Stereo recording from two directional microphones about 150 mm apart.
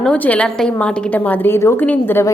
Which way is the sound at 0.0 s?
10° left (ahead or behind).